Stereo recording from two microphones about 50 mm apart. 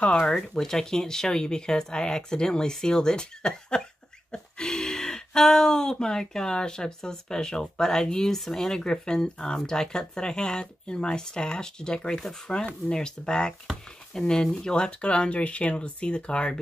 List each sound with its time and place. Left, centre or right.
0.4 s speech: centre